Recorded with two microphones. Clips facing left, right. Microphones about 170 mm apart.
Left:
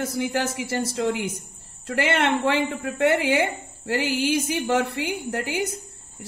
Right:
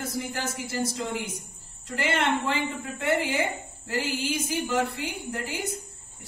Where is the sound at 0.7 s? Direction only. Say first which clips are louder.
Left 5 dB; 75° left (ahead or behind).